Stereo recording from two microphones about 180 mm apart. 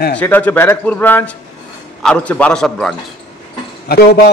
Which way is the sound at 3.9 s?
60° left (ahead or behind).